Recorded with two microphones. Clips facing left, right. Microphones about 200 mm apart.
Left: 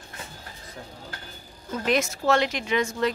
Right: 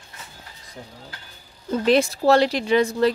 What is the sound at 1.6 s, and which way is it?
A woman's voice, 30° right (ahead or behind).